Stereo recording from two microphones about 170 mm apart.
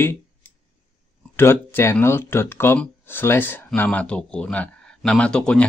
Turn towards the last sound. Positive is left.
turn(degrees=5)  # may be behind; listen again after turning